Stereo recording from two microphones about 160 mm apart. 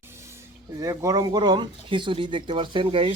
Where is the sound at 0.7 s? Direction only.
20° right (ahead or behind); by 3.1 s 35° right (ahead or behind).